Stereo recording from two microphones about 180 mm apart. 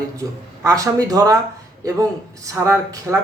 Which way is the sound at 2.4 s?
15° right (ahead or behind).